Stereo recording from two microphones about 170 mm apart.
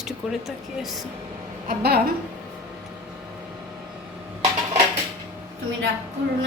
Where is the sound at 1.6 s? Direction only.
65° right (ahead or behind).